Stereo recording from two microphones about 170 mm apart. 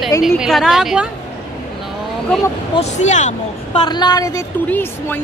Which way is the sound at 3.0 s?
45° left (ahead or behind).